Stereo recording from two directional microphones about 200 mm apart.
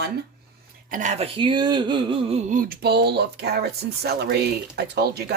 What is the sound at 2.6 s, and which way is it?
Speech, 50° right (ahead or behind).